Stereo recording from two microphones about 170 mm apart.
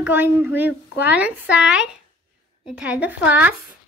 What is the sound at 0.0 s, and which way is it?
Speech, 10° right (ahead or behind).